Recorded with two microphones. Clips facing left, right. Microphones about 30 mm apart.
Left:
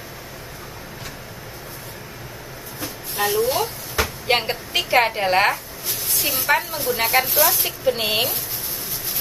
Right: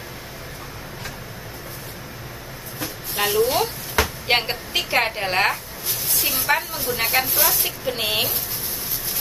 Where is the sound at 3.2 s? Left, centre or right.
Right.